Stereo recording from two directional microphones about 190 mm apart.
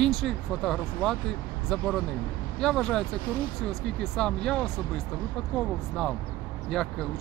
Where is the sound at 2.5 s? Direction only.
5° left (ahead or behind).